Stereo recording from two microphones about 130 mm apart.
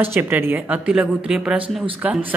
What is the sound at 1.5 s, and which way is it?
Speech, 45° right (ahead or behind).